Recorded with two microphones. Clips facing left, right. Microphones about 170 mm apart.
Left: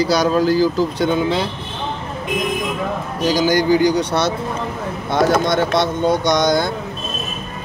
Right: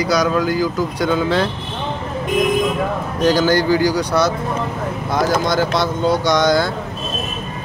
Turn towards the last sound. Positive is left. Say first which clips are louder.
# right 1 dB
turn(degrees=20)  # may be behind; listen again after turning